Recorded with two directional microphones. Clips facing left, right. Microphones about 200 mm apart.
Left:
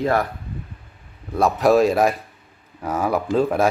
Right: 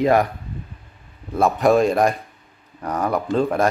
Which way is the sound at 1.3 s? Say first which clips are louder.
Even; centre (ahead or behind).